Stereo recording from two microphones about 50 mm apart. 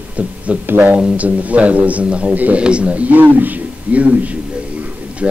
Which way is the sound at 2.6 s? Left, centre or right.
Right.